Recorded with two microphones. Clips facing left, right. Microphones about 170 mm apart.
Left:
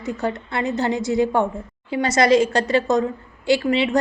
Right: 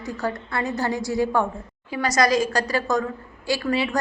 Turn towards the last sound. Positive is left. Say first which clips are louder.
# left 5 dB
turn(degrees=25)  # may be behind; listen again after turning